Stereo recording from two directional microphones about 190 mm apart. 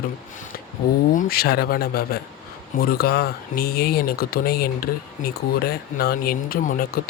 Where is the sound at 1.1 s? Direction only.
45° left (ahead or behind).